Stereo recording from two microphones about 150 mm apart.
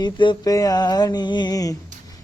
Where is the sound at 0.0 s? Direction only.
30° left (ahead or behind).